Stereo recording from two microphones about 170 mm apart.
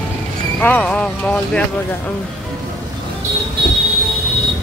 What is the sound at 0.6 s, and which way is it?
Speech, 10° left (ahead or behind).